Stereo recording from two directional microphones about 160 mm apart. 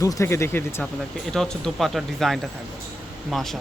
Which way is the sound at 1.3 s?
5° left (ahead or behind).